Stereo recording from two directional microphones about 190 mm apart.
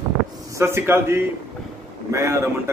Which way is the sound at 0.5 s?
15° right (ahead or behind).